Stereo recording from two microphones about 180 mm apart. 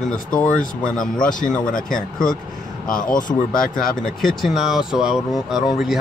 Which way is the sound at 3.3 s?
25° left (ahead or behind).